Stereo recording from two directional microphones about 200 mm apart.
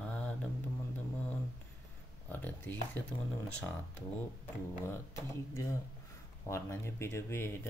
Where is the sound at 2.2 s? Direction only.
10° left (ahead or behind).